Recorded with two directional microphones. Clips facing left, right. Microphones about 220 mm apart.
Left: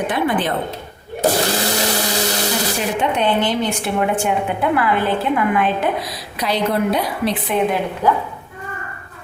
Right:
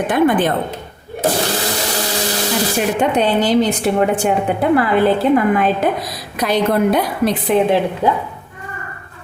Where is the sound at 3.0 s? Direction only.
40° right (ahead or behind).